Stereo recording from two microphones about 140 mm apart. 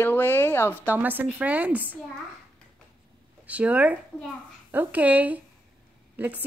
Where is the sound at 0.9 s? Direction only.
15° right (ahead or behind).